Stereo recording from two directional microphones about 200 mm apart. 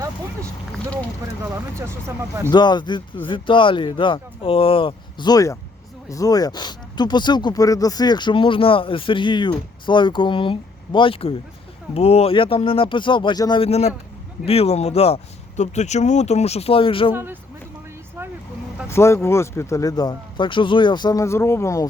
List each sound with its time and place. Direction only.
1.2 s speech: 15° right (ahead or behind)
2.5 s speech: 20° left (ahead or behind)
18.9 s speech: 15° left (ahead or behind)